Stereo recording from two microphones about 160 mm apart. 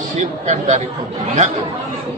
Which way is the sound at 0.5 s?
45° right (ahead or behind).